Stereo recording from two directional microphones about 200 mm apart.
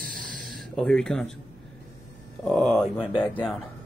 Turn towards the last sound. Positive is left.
turn(degrees=10)  # may be behind; listen again after turning